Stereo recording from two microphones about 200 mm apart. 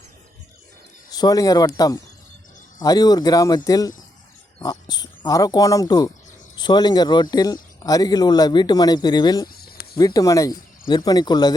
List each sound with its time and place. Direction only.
1.1 s a man's voice: 20° left (ahead or behind)
9.5 s a sound: 50° left (ahead or behind)
10.0 s a man's voice: 20° left (ahead or behind)